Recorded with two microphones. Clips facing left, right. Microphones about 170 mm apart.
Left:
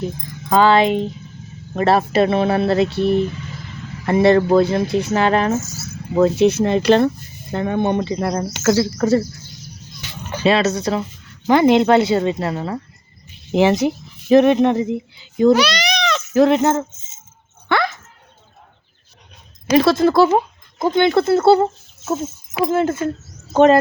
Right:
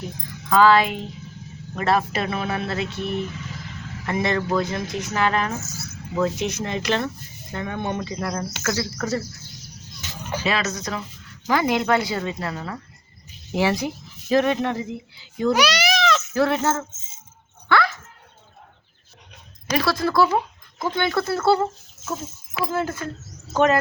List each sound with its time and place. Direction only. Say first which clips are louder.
0.5 s speech: left 3 dB; 25° left (ahead or behind)
10.4 s speech: left 10 dB; 30° left (ahead or behind)
15.5 s cat: left 2 dB; 10° right (ahead or behind)
16.3 s speech: left 12 dB; 20° left (ahead or behind)
17.7 s a sound: left 1 dB; 25° left (ahead or behind)
19.7 s speech: left 8 dB; 25° left (ahead or behind)